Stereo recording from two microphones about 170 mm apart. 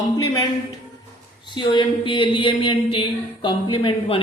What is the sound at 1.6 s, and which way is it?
Speech, 30° left (ahead or behind).